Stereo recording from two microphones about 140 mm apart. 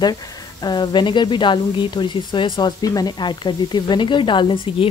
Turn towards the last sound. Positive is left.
turn(degrees=35)  # may be behind; listen again after turning